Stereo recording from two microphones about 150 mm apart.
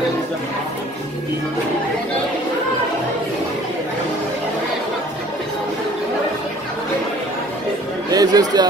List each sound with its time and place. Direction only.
8.1 s a man's voice: 25° right (ahead or behind)